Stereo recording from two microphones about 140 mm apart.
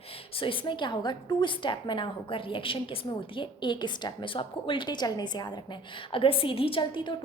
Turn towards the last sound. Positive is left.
turn(degrees=35)  # may be behind; listen again after turning